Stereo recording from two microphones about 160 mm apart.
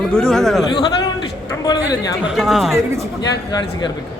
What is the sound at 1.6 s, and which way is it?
Speech, 25° left (ahead or behind).